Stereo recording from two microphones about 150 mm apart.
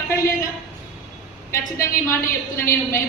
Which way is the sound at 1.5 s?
20° left (ahead or behind).